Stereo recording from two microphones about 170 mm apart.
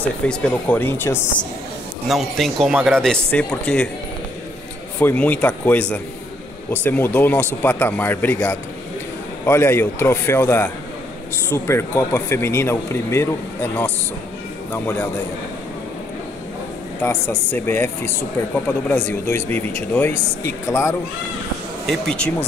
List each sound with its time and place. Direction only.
0.3 s speech: 5° left (ahead or behind)
2.0 s speech: centre (ahead or behind)
4.9 s speech: 10° left (ahead or behind)
17.0 s speech: 10° left (ahead or behind)
21.8 s speech: 5° left (ahead or behind)